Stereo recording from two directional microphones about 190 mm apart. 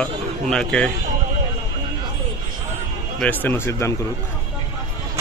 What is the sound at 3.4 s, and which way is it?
Speech, 10° left (ahead or behind).